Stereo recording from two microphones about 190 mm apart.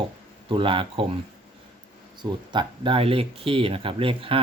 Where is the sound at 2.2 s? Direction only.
25° right (ahead or behind).